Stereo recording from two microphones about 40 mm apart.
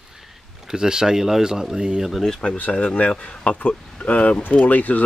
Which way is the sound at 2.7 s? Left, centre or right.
Left.